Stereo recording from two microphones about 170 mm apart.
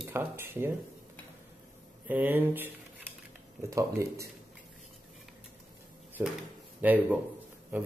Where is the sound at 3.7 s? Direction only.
20° right (ahead or behind).